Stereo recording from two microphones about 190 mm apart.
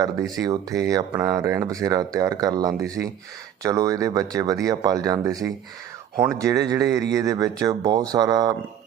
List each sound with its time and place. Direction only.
0.0 s speech: 20° right (ahead or behind)